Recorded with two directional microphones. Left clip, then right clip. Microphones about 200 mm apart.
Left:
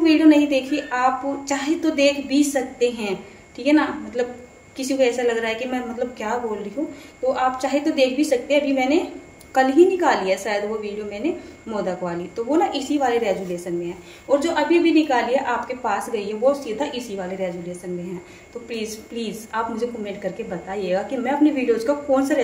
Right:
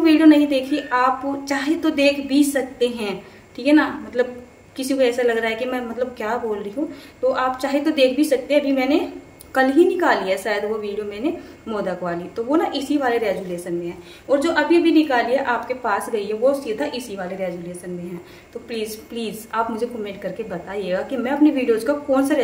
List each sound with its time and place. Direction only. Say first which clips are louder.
0.0 s a woman's voice: right 1 dB; 15° right (ahead or behind)
14.3 s a woman's voice: right 1 dB; 15° right (ahead or behind)
18.7 s a woman's voice: right 2 dB; 15° right (ahead or behind)